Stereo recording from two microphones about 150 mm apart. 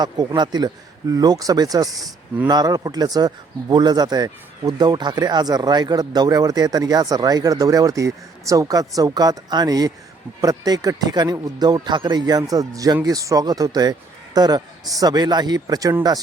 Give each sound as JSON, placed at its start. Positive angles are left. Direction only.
{"t": 0.0, "sound": "speech", "side_deg": -30}